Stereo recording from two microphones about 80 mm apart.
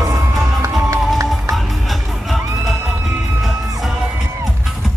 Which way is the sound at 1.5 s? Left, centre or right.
Centre.